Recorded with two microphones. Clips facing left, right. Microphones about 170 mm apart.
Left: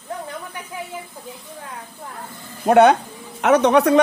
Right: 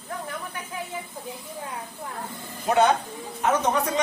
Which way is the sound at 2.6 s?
65° left (ahead or behind).